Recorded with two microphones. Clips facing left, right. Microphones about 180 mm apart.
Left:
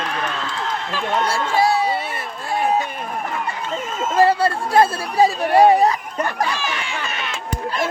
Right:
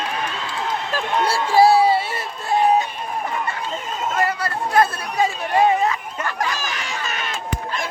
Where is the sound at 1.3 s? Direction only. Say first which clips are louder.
Right 6 dB; 30° right (ahead or behind).